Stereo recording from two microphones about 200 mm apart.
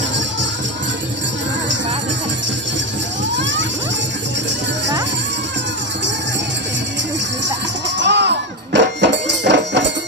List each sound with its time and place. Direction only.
8.0 s music: 60° right (ahead or behind)